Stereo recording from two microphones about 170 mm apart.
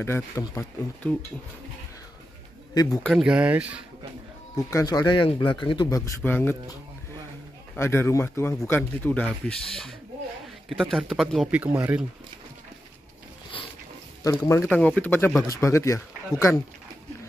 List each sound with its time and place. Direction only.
0.0 s speech: 15° left (ahead or behind)
3.0 s speech: centre (ahead or behind)
4.6 s speech: 20° left (ahead or behind); by 12.1 s 10° right (ahead or behind)
14.2 s speech: 20° left (ahead or behind)